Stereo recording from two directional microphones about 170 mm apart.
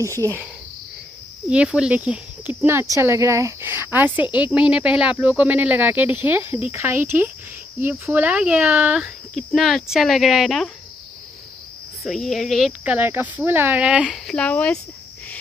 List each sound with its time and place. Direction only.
0.0 s speech: 20° right (ahead or behind)
1.5 s speech: 5° right (ahead or behind)
12.0 s speech: centre (ahead or behind)